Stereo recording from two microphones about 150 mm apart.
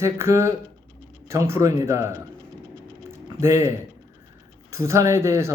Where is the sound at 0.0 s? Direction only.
20° right (ahead or behind).